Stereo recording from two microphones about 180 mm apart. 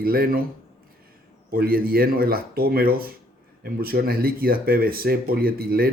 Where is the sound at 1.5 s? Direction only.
55° right (ahead or behind).